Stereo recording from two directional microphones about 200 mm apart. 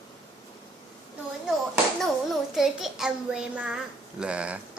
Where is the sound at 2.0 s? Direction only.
Centre (ahead or behind).